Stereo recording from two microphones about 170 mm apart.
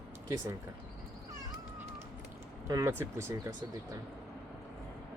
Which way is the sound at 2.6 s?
15° right (ahead or behind).